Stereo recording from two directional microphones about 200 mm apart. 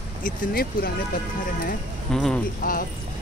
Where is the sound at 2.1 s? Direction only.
5° left (ahead or behind).